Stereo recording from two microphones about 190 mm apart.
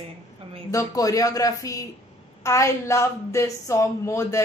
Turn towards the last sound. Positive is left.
turn(degrees=15)  # may be behind; listen again after turning